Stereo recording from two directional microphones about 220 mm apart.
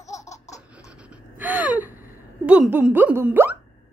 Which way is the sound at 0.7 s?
5° right (ahead or behind).